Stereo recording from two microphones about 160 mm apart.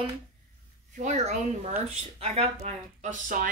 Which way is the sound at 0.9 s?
45° right (ahead or behind).